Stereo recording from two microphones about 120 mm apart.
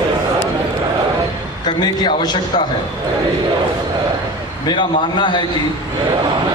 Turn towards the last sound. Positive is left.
turn(degrees=40)  # may be behind; listen again after turning